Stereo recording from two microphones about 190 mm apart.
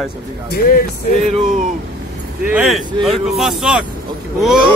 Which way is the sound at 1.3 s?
40° right (ahead or behind).